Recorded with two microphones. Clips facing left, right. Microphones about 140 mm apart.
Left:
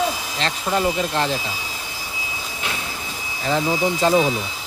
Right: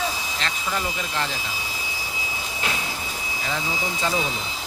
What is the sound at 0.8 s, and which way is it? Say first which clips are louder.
Speech: left 10 dB; 40° left (ahead or behind).